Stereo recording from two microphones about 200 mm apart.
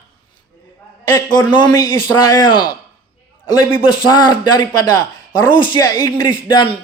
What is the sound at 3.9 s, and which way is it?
Speech, 20° left (ahead or behind).